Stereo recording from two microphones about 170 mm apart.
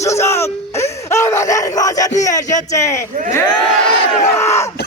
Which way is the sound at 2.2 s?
20° left (ahead or behind).